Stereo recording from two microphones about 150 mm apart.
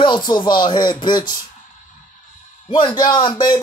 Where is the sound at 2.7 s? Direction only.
30° left (ahead or behind).